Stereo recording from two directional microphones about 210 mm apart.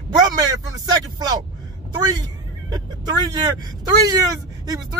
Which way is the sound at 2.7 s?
20° right (ahead or behind).